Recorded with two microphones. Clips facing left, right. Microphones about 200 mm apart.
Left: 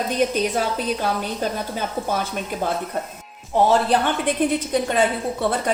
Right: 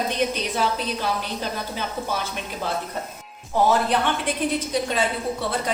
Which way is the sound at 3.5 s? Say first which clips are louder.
Left 3 dB; 25° left (ahead or behind).